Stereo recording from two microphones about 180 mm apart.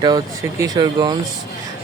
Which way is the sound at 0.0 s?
20° right (ahead or behind).